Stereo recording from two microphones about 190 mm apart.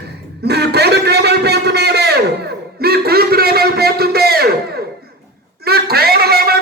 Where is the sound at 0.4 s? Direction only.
60° right (ahead or behind).